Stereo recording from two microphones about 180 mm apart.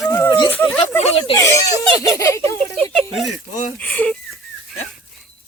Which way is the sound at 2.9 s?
Centre (ahead or behind).